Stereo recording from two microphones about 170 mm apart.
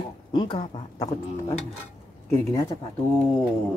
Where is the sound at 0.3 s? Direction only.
25° left (ahead or behind).